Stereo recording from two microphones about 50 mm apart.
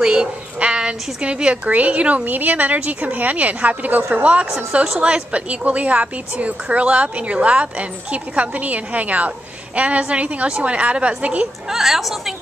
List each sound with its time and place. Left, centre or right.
0.0 s a sound: centre
0.6 s a woman's voice: centre
4.8 s a woman's voice: centre
11.7 s a woman's voice: centre